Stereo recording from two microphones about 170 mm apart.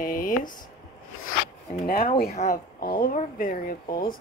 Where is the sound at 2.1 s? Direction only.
65° left (ahead or behind).